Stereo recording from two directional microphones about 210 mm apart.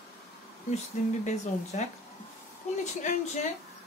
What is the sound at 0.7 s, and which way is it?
Speech, 30° left (ahead or behind).